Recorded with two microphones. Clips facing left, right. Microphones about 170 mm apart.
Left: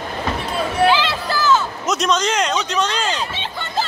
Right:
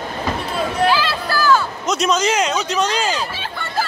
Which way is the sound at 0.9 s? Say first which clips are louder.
Left 1 dB; 20° left (ahead or behind).